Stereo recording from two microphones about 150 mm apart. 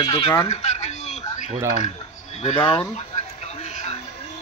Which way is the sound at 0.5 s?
50° left (ahead or behind).